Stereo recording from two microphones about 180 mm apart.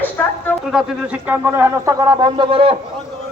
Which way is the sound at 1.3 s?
10° right (ahead or behind).